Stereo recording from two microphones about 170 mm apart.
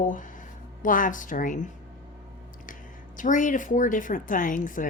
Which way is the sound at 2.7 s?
50° left (ahead or behind).